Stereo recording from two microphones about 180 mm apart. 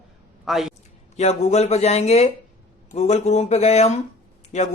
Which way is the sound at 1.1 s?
40° left (ahead or behind).